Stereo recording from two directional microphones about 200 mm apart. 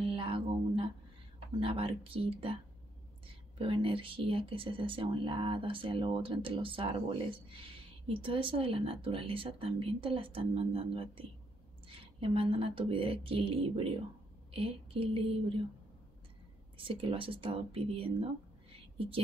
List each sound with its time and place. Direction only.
0.1 s a sound: 25° right (ahead or behind)
1.6 s speech: 25° right (ahead or behind)
16.7 s speech: 25° right (ahead or behind)